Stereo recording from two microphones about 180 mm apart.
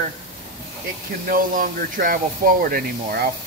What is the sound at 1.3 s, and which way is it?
Speech, 50° right (ahead or behind).